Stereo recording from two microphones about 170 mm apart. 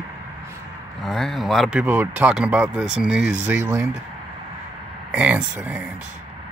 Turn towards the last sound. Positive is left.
turn(degrees=-10)  # may be behind; listen again after turning